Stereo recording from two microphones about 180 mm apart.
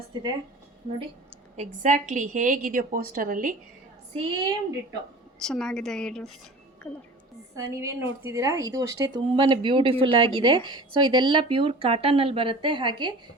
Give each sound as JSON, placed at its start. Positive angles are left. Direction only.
{"t": 0.1, "sound": "speech", "side_deg": -25}
{"t": 1.5, "sound": "a woman's voice", "side_deg": -40}
{"t": 4.1, "sound": "a woman's voice", "side_deg": -30}
{"t": 5.4, "sound": "a woman's voice", "side_deg": 5}
{"t": 7.5, "sound": "speech", "side_deg": -15}
{"t": 9.3, "sound": "a woman's voice", "side_deg": -30}